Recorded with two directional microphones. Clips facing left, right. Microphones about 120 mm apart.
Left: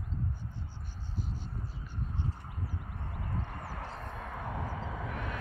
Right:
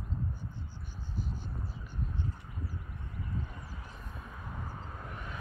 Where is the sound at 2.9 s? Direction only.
65° left (ahead or behind).